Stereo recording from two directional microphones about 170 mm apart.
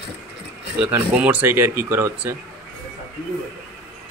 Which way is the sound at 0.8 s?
10° right (ahead or behind).